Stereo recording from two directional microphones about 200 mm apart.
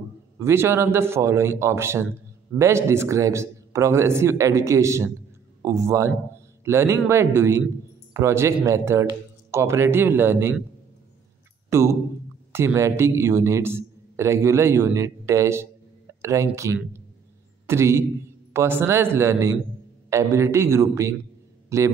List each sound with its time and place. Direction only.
0.4 s a man's voice: 15° right (ahead or behind)
11.7 s a sound: 15° right (ahead or behind)
12.5 s a man's voice: 15° right (ahead or behind)